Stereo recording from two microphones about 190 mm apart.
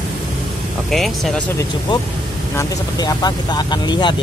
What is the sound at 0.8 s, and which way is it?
Speech, centre (ahead or behind).